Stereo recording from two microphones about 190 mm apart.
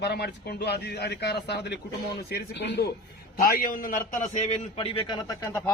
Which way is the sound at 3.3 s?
50° left (ahead or behind).